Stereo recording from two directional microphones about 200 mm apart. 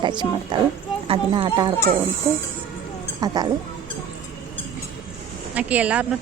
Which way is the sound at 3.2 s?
20° right (ahead or behind).